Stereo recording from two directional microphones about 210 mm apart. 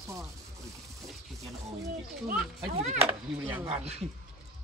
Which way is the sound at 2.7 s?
30° right (ahead or behind).